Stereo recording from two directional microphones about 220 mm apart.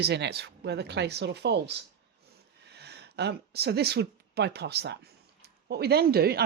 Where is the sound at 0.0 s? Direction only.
50° right (ahead or behind).